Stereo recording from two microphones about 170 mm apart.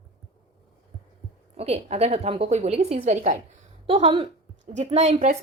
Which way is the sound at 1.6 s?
35° right (ahead or behind).